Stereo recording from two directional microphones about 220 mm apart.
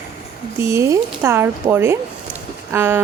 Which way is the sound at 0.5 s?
10° right (ahead or behind).